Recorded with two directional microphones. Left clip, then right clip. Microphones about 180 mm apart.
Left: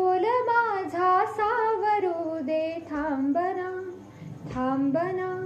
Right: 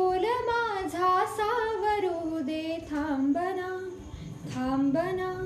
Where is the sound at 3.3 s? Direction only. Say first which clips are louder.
Left 2 dB; 15° right (ahead or behind).